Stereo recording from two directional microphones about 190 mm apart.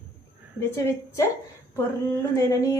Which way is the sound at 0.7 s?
15° left (ahead or behind).